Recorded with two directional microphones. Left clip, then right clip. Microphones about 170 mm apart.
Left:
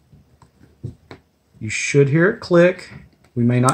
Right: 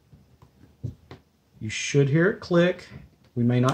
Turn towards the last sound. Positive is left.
turn(degrees=25)  # may be behind; listen again after turning